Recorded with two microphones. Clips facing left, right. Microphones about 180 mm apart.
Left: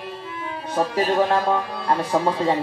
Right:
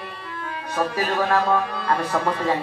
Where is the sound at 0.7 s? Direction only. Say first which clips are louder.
Left 3 dB; 25° left (ahead or behind).